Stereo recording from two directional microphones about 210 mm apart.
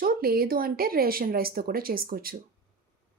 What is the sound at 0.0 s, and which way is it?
A woman's voice, 45° right (ahead or behind).